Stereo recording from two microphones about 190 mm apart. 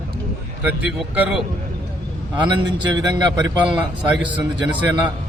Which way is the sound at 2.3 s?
25° right (ahead or behind).